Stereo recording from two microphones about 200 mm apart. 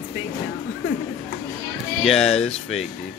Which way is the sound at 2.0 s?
Centre (ahead or behind).